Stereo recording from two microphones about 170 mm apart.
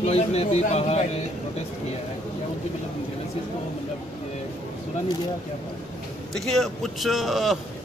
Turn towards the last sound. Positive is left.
turn(degrees=0)  # may be behind; listen again after turning